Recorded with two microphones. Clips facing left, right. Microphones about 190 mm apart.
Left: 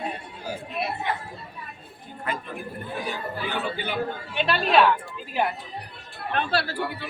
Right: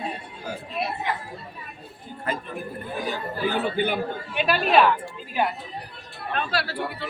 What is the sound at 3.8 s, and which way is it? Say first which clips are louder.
Speech: right 8 dB; 50° right (ahead or behind).